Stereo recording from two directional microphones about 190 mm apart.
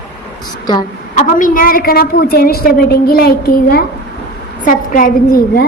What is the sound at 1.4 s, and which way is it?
A woman's voice, 50° left (ahead or behind).